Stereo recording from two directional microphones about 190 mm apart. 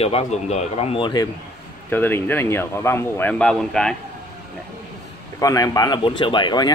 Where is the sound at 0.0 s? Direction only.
35° left (ahead or behind).